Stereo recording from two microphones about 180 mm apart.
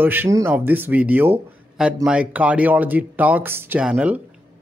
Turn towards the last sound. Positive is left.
turn(degrees=-5)  # may be behind; listen again after turning